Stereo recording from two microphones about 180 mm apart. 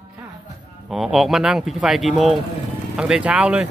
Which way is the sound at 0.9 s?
Centre (ahead or behind).